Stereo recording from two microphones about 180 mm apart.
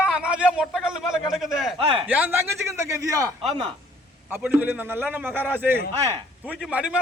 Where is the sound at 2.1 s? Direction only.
10° right (ahead or behind).